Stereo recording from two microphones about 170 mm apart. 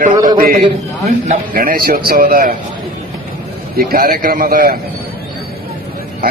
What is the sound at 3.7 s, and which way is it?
A man's voice, 60° right (ahead or behind).